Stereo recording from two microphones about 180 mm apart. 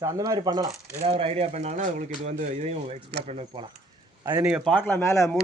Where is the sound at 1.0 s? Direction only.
35° right (ahead or behind).